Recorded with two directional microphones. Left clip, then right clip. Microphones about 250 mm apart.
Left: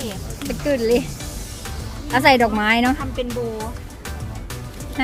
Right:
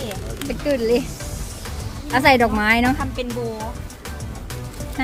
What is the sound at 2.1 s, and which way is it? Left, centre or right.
Speech, centre.